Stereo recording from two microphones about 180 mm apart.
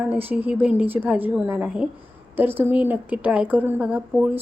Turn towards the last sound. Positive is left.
turn(degrees=-10)  # may be behind; listen again after turning